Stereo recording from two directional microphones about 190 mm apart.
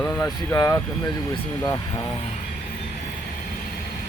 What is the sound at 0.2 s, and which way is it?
Speech, 15° left (ahead or behind).